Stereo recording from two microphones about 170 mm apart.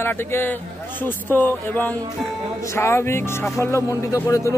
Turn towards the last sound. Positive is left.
turn(degrees=20)  # may be behind; listen again after turning